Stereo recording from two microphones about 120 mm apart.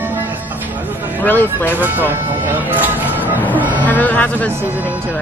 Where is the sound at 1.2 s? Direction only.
15° left (ahead or behind).